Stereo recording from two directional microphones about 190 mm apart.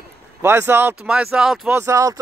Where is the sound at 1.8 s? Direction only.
15° right (ahead or behind).